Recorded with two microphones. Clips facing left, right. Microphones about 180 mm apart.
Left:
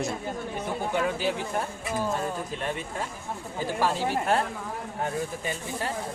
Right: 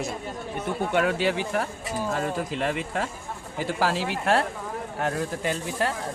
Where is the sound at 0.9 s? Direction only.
80° right.